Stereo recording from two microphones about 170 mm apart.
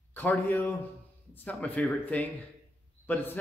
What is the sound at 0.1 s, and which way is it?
A man's voice, 10° left (ahead or behind).